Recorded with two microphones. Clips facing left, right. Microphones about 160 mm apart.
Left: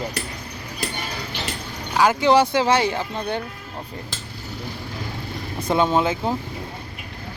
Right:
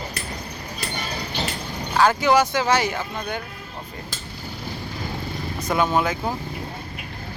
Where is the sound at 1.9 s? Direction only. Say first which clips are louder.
Even; 15° left (ahead or behind).